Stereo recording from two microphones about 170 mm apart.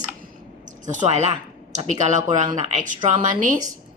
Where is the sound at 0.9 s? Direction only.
45° right (ahead or behind).